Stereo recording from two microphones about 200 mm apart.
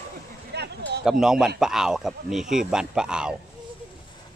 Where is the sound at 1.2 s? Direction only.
Centre (ahead or behind).